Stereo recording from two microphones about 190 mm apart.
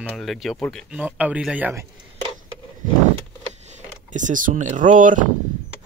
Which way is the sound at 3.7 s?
40° right (ahead or behind).